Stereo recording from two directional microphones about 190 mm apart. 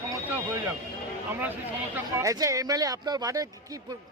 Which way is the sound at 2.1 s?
15° right (ahead or behind).